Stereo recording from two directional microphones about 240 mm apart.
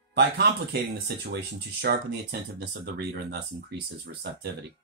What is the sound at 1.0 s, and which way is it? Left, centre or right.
Speech, right.